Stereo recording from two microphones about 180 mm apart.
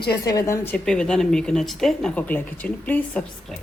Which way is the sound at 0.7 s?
5° left (ahead or behind).